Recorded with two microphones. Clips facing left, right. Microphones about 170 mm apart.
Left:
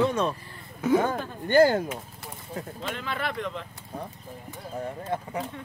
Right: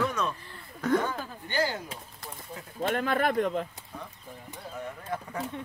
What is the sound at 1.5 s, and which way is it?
Speech, 50° left (ahead or behind).